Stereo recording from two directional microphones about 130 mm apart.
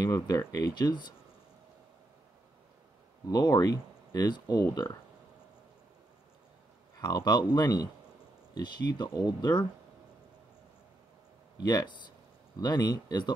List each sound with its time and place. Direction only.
0.0 s speech: 30° left (ahead or behind)
3.3 s speech: 30° left (ahead or behind)
7.0 s speech: 30° left (ahead or behind)
11.6 s speech: 30° left (ahead or behind)